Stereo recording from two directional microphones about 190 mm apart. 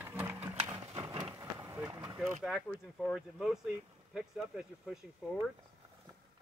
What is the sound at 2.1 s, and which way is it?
Speech, 5° right (ahead or behind).